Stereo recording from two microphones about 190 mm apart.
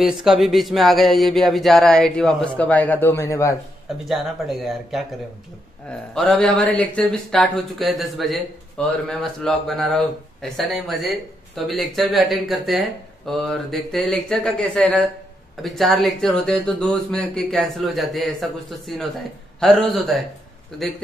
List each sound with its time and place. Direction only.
0.0 s speech: centre (ahead or behind); by 3.5 s 15° left (ahead or behind)
4.1 s speech: centre (ahead or behind)
19.6 s speech: centre (ahead or behind)